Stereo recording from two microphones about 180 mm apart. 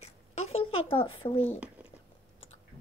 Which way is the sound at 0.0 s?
35° left (ahead or behind).